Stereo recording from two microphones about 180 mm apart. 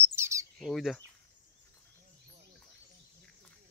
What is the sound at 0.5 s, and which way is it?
Speech, centre (ahead or behind).